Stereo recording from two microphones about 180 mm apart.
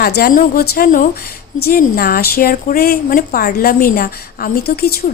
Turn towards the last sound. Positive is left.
turn(degrees=60)  # may be behind; listen again after turning